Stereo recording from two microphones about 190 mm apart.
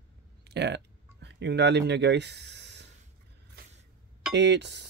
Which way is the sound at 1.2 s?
65° right (ahead or behind).